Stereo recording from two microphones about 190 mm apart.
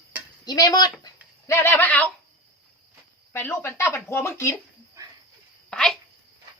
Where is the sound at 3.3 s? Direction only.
10° left (ahead or behind).